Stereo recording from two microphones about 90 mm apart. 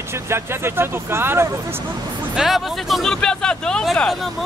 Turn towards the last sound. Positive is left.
turn(degrees=5)  # may be behind; listen again after turning